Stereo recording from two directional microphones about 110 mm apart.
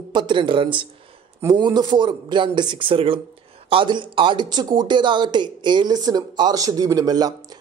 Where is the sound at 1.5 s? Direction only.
40° right (ahead or behind).